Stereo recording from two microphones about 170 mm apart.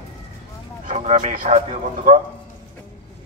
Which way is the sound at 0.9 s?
45° right (ahead or behind).